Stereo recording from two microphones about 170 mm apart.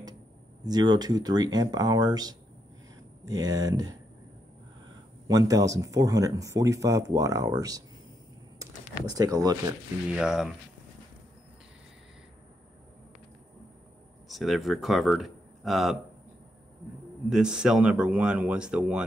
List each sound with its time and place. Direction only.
0.7 s speech: 25° right (ahead or behind)
5.3 s speech: 20° right (ahead or behind)
10.0 s speech: 5° right (ahead or behind)
14.3 s speech: centre (ahead or behind)
17.3 s speech: 5° right (ahead or behind)